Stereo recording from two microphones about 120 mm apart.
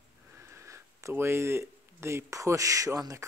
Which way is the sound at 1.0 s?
20° right (ahead or behind).